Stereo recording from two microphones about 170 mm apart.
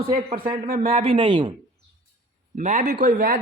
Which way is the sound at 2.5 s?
45° right (ahead or behind).